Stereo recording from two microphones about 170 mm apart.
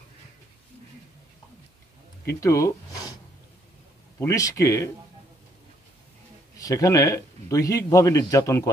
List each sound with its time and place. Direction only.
2.2 s speech: 15° left (ahead or behind)
4.2 s speech: 20° left (ahead or behind)
6.6 s a man's voice: 20° left (ahead or behind)